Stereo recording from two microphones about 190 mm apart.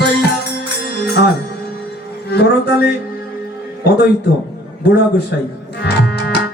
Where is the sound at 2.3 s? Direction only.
60° left (ahead or behind).